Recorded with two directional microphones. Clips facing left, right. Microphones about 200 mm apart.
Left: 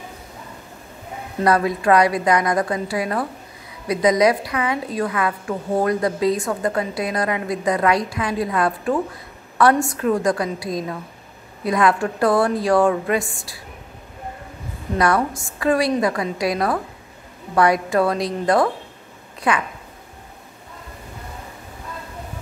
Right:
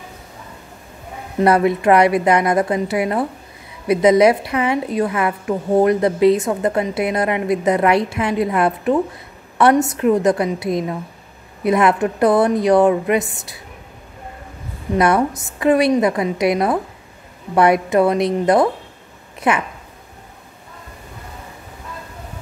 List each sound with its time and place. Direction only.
1.4 s a woman's voice: 25° right (ahead or behind)
15.0 s a woman's voice: 20° right (ahead or behind)